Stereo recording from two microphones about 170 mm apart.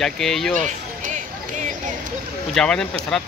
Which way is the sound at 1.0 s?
50° right (ahead or behind).